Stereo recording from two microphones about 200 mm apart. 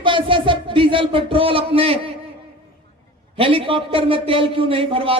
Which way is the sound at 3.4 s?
25° right (ahead or behind).